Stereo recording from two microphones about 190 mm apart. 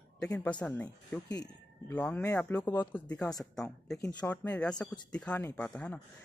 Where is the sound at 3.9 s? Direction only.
15° left (ahead or behind).